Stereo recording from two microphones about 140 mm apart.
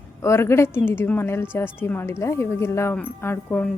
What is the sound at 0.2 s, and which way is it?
A woman's voice, 20° left (ahead or behind).